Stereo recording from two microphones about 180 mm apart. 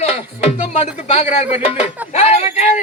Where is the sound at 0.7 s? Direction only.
35° left (ahead or behind).